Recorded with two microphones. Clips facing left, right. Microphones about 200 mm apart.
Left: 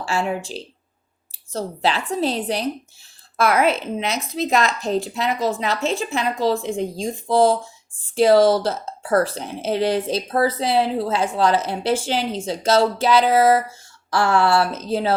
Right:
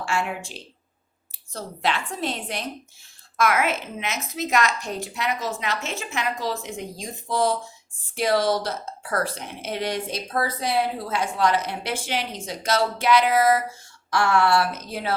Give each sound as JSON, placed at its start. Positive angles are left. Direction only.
{"t": 0.0, "sound": "a woman's voice", "side_deg": 35}